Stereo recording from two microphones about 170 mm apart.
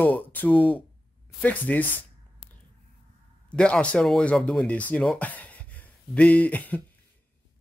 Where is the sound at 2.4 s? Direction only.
30° left (ahead or behind).